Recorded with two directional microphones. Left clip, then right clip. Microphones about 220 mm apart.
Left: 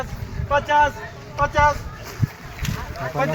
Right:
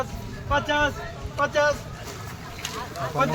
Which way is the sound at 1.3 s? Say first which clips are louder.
Left 4 dB; 15° left (ahead or behind).